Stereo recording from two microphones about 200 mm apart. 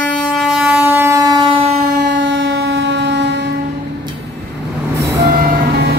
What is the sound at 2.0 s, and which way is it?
Train, 65° right (ahead or behind).